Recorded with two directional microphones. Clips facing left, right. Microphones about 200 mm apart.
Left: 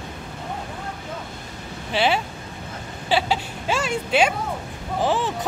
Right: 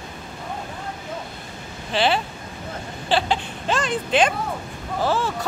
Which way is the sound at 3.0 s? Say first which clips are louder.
Even; 10° left (ahead or behind).